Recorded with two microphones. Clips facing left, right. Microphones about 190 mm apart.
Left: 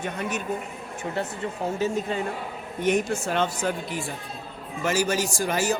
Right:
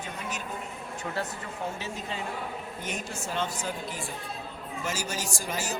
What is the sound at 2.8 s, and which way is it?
Speech, 65° left (ahead or behind).